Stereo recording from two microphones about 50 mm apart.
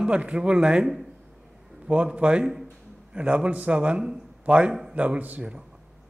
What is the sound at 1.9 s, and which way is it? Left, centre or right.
A man's voice, right.